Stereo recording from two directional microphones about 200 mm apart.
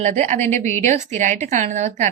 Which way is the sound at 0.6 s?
35° right (ahead or behind).